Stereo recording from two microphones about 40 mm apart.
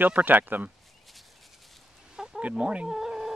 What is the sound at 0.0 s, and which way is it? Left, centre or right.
Speech, right.